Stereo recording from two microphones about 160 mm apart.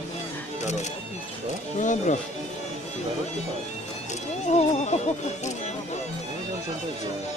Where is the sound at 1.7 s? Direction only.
50° left (ahead or behind).